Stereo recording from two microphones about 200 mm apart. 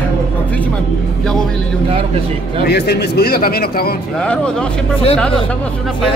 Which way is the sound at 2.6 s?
55° left (ahead or behind).